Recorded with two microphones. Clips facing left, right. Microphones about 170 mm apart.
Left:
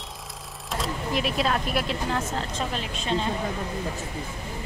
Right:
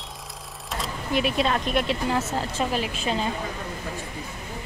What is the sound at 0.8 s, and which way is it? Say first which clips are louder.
Speech: right 2 dB; centre (ahead or behind).